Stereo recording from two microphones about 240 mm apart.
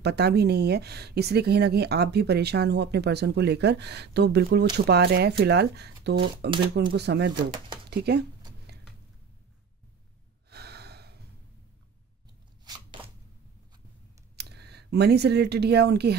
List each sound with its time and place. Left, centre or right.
0.0 s speech: right
7.9 s a sound: right
10.5 s gasp: right
14.3 s speech: right